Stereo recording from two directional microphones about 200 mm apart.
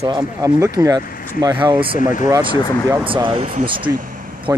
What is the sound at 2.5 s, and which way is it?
Speech, 20° left (ahead or behind).